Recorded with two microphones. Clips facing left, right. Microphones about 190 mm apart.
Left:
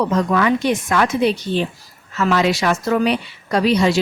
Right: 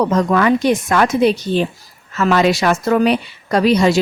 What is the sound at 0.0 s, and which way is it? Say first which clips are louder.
A woman's voice: right 3 dB; 45° right (ahead or behind).